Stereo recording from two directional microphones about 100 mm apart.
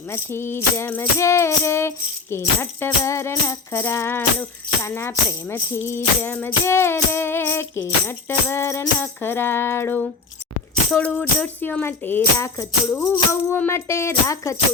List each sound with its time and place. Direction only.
0.1 s speech: 25° left (ahead or behind)